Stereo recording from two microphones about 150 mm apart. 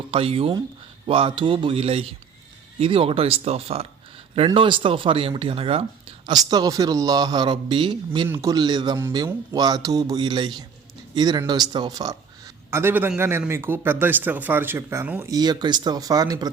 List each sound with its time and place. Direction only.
0.1 s speech: 40° right (ahead or behind)
6.3 s a man's voice: 25° right (ahead or behind)
8.3 s a man's voice: 20° right (ahead or behind)
12.7 s speech: 15° right (ahead or behind)
15.3 s a man's voice: 25° right (ahead or behind)